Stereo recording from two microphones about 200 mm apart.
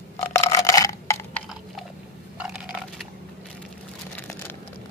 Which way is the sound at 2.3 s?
5° right (ahead or behind).